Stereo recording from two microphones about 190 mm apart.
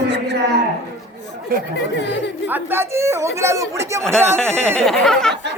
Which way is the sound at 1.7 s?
65° left (ahead or behind).